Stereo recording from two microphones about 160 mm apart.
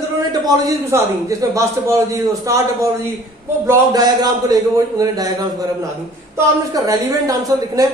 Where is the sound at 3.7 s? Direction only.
25° right (ahead or behind).